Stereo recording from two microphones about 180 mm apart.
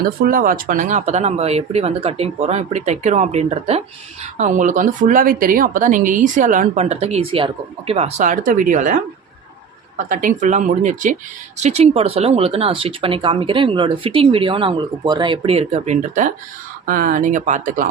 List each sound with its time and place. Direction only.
0.0 s speech: 50° right (ahead or behind)
10.1 s speech: 50° right (ahead or behind)
16.8 s speech: 50° right (ahead or behind)